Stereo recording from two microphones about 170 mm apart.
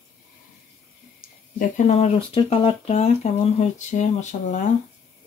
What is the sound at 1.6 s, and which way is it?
Speech, 45° left (ahead or behind).